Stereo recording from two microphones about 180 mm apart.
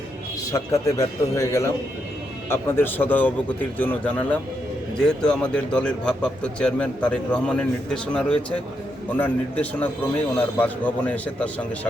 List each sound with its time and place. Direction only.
0.5 s a man's voice: 20° left (ahead or behind)